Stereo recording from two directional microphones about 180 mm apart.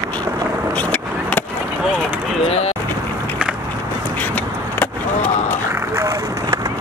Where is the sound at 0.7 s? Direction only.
5° left (ahead or behind).